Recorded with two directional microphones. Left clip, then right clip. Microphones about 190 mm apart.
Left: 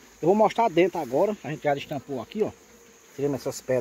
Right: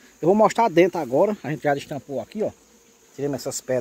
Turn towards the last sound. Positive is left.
turn(degrees=-20)  # may be behind; listen again after turning